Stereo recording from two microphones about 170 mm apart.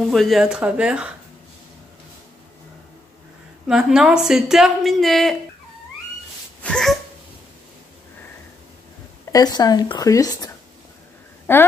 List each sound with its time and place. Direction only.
0.0 s a woman's voice: centre (ahead or behind)
3.6 s a woman's voice: 5° right (ahead or behind)
6.6 s a sound: 5° left (ahead or behind)
9.3 s speech: 25° left (ahead or behind)